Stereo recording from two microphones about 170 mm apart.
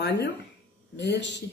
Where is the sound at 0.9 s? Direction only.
90° left.